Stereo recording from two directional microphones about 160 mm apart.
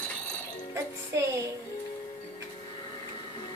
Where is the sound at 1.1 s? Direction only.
20° right (ahead or behind).